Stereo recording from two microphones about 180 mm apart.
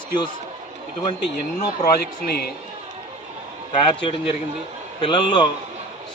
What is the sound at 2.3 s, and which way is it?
Speech, 60° left (ahead or behind).